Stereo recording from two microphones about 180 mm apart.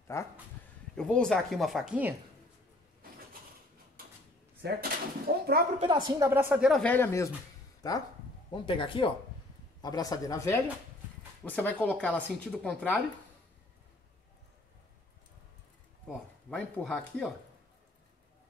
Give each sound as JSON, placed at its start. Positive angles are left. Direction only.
{"t": 0.1, "sound": "speech", "side_deg": 15}
{"t": 0.9, "sound": "speech", "side_deg": 5}
{"t": 4.6, "sound": "speech", "side_deg": -60}
{"t": 5.8, "sound": "a woman's voice", "side_deg": -25}
{"t": 6.2, "sound": "speech", "side_deg": -10}
{"t": 6.7, "sound": "speech", "side_deg": 10}
{"t": 16.4, "sound": "speech", "side_deg": 5}